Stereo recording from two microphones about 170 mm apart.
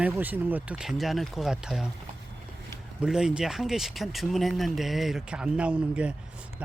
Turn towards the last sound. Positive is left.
turn(degrees=-5)  # may be behind; listen again after turning